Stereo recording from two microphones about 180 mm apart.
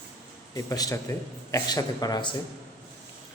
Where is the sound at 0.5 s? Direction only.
20° left (ahead or behind).